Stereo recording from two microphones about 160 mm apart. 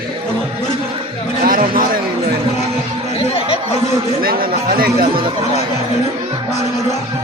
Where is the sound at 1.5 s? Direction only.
60° right (ahead or behind).